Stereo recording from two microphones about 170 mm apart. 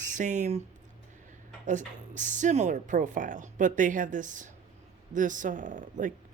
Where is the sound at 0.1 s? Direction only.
45° right (ahead or behind).